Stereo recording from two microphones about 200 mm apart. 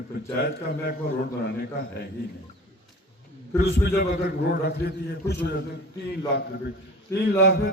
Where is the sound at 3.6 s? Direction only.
55° left (ahead or behind).